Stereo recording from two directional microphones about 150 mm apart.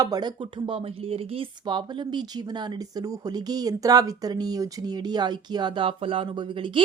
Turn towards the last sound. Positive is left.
turn(degrees=-35)  # may be behind; listen again after turning